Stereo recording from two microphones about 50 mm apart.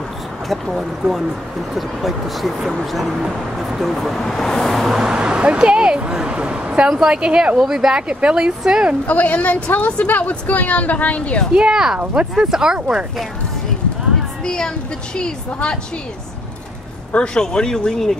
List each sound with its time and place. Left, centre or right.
0.7 s speech: centre
4.9 s speech: centre
9.0 s a woman's voice: left
11.5 s speech: centre
12.0 s speech: right
12.4 s speech: centre
14.4 s a woman's voice: centre
17.1 s speech: centre